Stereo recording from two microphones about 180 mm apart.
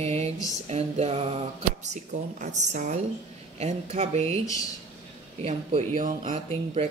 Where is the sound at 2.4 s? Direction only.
40° right (ahead or behind).